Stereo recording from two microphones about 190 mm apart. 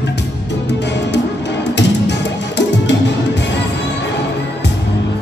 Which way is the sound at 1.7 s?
65° left (ahead or behind).